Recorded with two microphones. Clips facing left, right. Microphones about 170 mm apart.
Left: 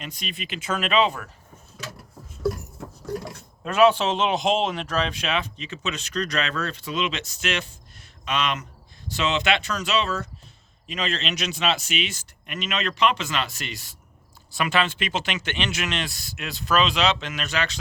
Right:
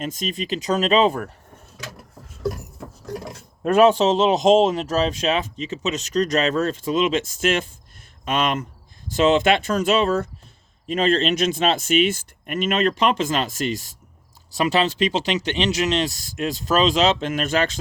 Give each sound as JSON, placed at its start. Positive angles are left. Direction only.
{"t": 0.0, "sound": "speech", "side_deg": -45}
{"t": 3.6, "sound": "speech", "side_deg": -50}